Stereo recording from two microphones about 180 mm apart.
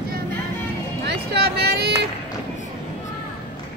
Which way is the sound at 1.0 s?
70° right (ahead or behind).